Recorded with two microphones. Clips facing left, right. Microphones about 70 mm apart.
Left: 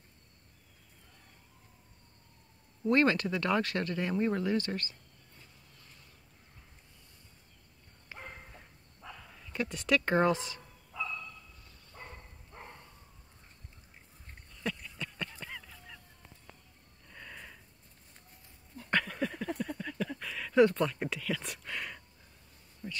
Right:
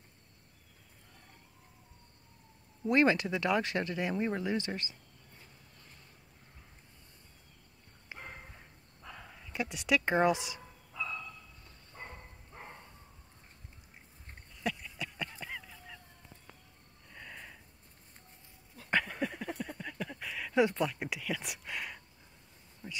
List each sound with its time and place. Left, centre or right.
2.9 s speech: centre
8.1 s dog: centre
9.0 s speech: centre
11.9 s dog: centre
14.5 s a sound: centre
15.3 s goose: centre
17.1 s sniff: centre
18.8 s a sound: centre